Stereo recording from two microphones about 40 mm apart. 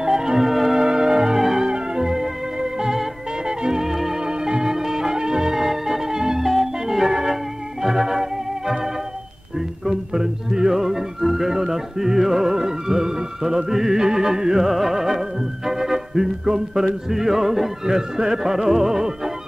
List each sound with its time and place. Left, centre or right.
0.0 s music: centre
0.7 s music: centre
4.2 s music: right
7.8 s organ: centre
9.8 s music: centre